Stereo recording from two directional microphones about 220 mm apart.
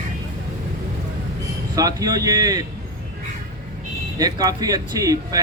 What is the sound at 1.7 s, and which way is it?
Speech, 15° right (ahead or behind).